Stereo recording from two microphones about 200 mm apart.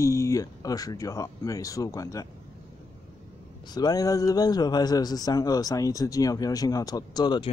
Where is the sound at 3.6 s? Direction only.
20° left (ahead or behind).